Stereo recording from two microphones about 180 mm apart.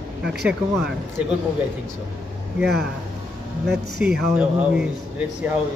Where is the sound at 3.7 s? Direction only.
65° right (ahead or behind).